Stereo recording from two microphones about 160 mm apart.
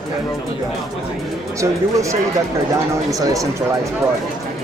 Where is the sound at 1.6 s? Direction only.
20° right (ahead or behind).